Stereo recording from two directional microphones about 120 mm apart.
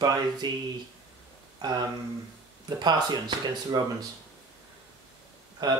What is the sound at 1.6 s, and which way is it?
Speech, 35° right (ahead or behind).